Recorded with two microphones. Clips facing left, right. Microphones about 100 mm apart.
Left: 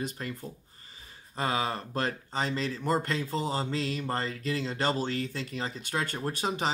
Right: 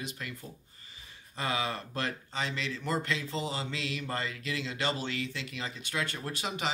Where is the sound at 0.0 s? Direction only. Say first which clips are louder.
Left 5 dB; 40° left (ahead or behind).